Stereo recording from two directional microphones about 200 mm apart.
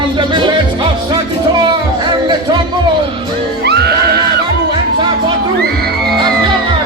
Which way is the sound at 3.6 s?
55° right (ahead or behind).